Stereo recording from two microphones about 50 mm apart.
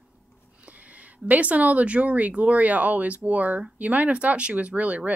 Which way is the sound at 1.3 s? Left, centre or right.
Right.